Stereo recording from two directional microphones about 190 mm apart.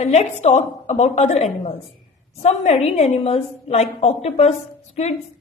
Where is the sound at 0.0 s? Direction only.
35° left (ahead or behind).